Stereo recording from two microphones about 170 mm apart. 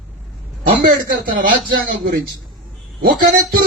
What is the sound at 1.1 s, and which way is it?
Speech, 55° right (ahead or behind).